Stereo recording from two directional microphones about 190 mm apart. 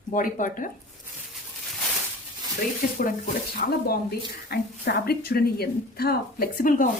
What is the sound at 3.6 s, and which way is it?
Speech, 45° left (ahead or behind).